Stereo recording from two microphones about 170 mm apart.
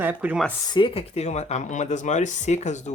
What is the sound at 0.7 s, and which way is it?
Speech, 30° left (ahead or behind).